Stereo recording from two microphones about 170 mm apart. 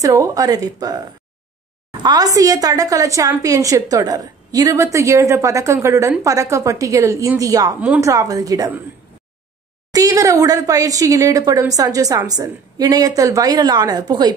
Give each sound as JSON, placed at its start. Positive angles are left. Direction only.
{"t": 0.0, "sound": "a woman's voice", "side_deg": -20}
{"t": 9.9, "sound": "a woman's voice", "side_deg": -20}